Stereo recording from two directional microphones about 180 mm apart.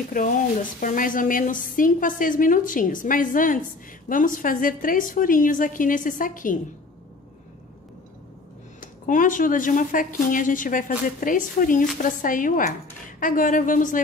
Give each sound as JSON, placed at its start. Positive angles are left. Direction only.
{"t": 0.1, "sound": "a woman's voice", "side_deg": 50}
{"t": 9.0, "sound": "a woman's voice", "side_deg": 45}